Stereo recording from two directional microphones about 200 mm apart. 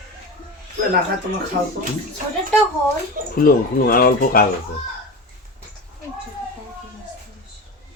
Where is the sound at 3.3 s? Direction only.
45° left (ahead or behind).